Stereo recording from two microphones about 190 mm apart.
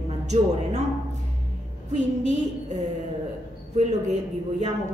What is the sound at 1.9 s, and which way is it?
Speech, 40° right (ahead or behind).